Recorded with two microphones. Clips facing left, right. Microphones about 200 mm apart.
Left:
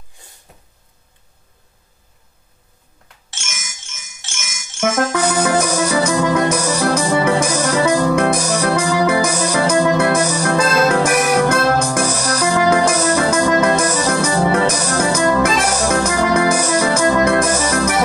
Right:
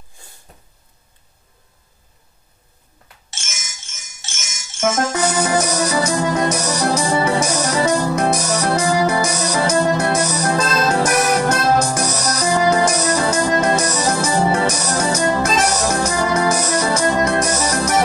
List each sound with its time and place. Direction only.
3.3 s music: 55° left (ahead or behind)